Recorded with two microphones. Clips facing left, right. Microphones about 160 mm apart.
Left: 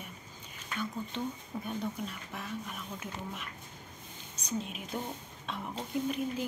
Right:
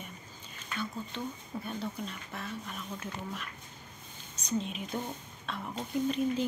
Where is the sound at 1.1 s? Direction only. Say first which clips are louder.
Left 1 dB; 20° left (ahead or behind).